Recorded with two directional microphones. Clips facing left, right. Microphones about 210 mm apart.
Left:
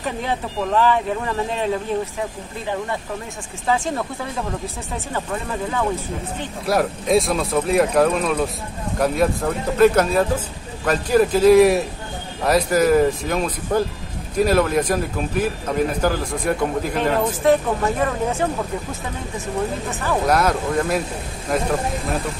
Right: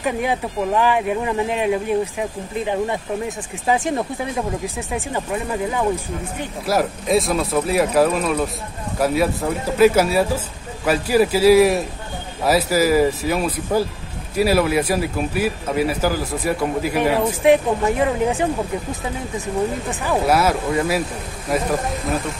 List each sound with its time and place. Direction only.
0.0 s speech: 10° right (ahead or behind)
19.9 s speech: 15° right (ahead or behind)